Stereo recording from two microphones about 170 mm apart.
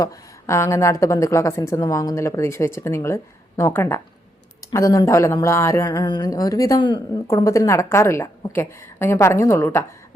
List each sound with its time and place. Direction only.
0.0 s speech: 15° left (ahead or behind)